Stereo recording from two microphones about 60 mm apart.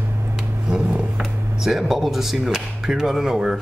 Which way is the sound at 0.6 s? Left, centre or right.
Centre.